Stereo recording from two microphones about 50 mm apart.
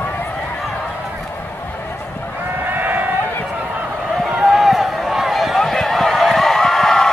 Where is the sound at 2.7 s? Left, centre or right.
Right.